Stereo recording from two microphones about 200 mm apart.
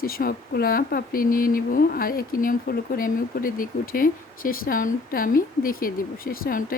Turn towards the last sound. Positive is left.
turn(degrees=45)  # may be behind; listen again after turning